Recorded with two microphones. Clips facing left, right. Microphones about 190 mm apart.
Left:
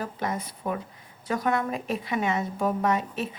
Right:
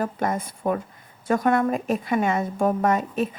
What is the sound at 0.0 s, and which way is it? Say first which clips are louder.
A woman's voice: right 5 dB; 50° right (ahead or behind).